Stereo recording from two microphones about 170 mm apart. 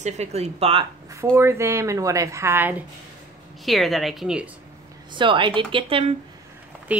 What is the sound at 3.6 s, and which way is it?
Speech, centre (ahead or behind).